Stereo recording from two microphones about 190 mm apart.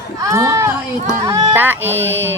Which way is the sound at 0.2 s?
15° right (ahead or behind).